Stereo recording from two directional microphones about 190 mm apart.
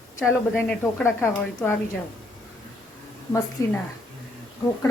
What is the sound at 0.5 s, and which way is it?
Speech, 10° left (ahead or behind).